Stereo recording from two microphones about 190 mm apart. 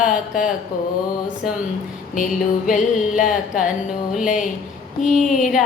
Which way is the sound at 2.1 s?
45° left (ahead or behind).